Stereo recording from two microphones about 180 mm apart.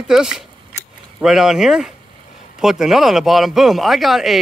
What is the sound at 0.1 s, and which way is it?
Speech, 5° right (ahead or behind).